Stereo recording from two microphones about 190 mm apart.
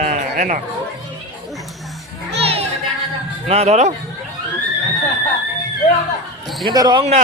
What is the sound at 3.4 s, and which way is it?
Speech, 35° right (ahead or behind).